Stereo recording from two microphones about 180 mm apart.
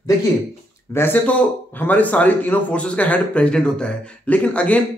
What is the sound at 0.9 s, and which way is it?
Speech, 10° left (ahead or behind).